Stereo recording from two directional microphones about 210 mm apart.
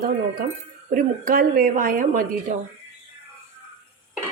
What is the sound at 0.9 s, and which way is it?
Speech, 40° right (ahead or behind).